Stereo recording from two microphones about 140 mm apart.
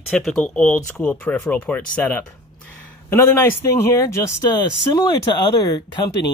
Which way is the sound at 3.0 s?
15° left (ahead or behind).